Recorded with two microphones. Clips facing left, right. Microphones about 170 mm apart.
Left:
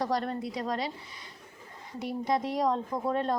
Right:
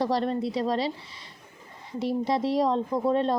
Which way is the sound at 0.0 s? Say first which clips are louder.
Right 5 dB; 25° right (ahead or behind).